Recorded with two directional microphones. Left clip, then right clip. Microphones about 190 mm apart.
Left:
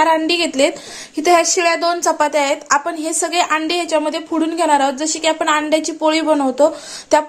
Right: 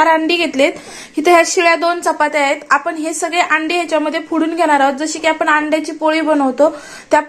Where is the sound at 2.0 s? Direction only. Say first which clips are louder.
Right 1 dB; 25° left (ahead or behind).